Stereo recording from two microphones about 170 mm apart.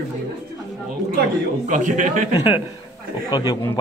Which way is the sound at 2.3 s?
35° left (ahead or behind).